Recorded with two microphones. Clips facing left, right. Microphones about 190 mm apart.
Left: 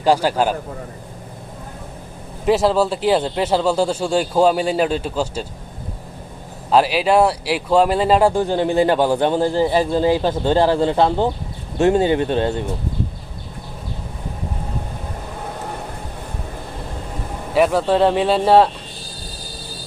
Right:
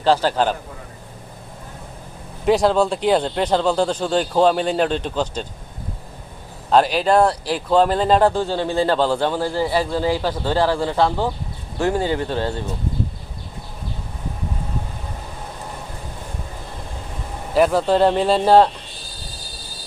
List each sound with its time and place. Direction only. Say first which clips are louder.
0.0 s speech: left 1 dB; 10° left (ahead or behind)
2.4 s speech: even; centre (ahead or behind)
6.7 s speech: left 1 dB; 5° left (ahead or behind); by 12.6 s 20° left (ahead or behind)
17.5 s speech: even; centre (ahead or behind)